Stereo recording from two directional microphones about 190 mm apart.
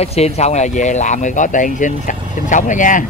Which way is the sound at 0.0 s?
35° left (ahead or behind).